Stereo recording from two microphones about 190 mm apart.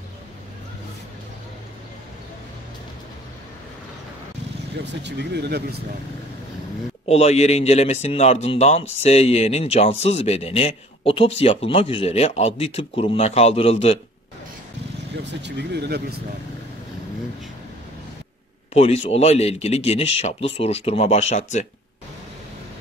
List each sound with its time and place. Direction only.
4.7 s speech: 60° right (ahead or behind)
7.1 s speech: 35° left (ahead or behind)
15.4 s speech: 60° right (ahead or behind)
18.7 s speech: 35° left (ahead or behind)